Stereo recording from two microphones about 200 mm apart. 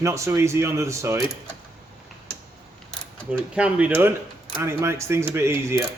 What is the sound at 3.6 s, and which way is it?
Speech, 5° right (ahead or behind).